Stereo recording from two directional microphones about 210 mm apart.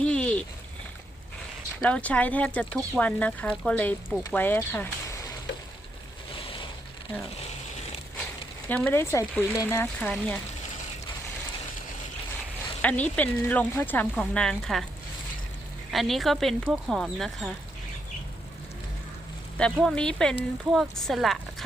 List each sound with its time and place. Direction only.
0.0 s a sound: 5° left (ahead or behind)
1.8 s speech: 5° left (ahead or behind)
6.3 s boat: 25° left (ahead or behind)
8.7 s speech: 10° left (ahead or behind)
12.8 s speech: 5° left (ahead or behind)
15.9 s speech: centre (ahead or behind)
19.5 s speech: 5° left (ahead or behind)